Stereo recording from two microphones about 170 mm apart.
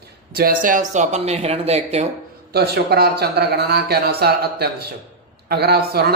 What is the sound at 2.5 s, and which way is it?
Speech, 70° right (ahead or behind).